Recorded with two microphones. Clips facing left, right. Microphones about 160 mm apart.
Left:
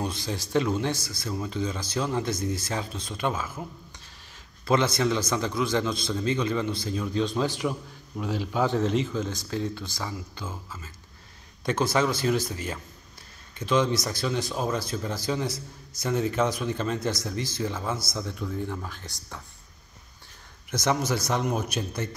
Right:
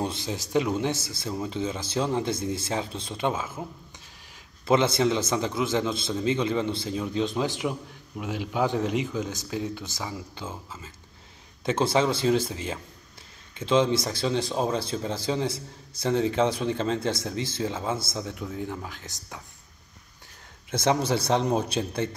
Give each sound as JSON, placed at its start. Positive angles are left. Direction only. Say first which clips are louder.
{"t": 0.0, "sound": "speech", "louder": "right 1 dB", "side_deg": -25}
{"t": 4.6, "sound": "speech", "louder": "right 2 dB", "side_deg": -25}
{"t": 20.7, "sound": "speech", "louder": "right 2 dB", "side_deg": -25}